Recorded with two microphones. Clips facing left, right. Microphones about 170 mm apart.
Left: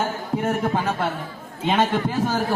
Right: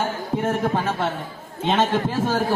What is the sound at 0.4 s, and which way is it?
A man's voice, 5° left (ahead or behind).